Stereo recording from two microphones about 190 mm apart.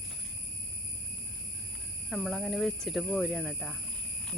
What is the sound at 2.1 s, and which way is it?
Speech, centre (ahead or behind).